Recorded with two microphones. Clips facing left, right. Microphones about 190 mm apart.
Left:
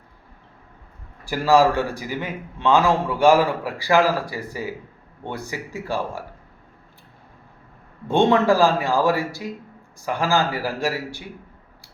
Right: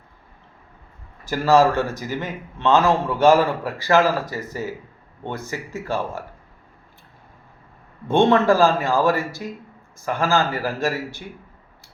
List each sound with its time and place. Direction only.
1.3 s a man's voice: 15° left (ahead or behind)
8.1 s a man's voice: 15° left (ahead or behind)
10.1 s a man's voice: 15° left (ahead or behind)